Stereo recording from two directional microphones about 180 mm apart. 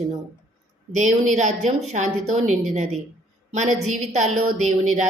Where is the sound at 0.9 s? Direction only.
45° right (ahead or behind).